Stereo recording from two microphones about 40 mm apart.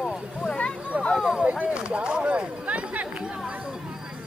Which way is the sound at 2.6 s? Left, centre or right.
Right.